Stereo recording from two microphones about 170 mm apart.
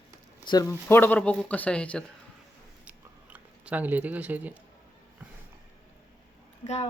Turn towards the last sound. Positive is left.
turn(degrees=40)  # may be behind; listen again after turning